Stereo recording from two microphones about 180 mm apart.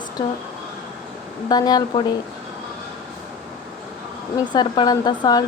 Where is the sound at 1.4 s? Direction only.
20° left (ahead or behind).